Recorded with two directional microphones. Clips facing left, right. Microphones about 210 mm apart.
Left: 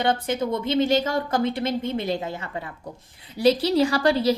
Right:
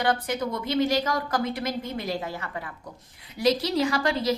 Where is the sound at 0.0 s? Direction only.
25° left (ahead or behind).